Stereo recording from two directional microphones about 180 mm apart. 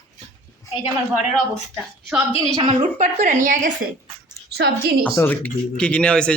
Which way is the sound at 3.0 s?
45° right (ahead or behind).